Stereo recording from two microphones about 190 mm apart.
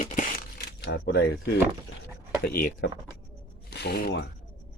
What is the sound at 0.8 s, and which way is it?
Speech, 60° left (ahead or behind).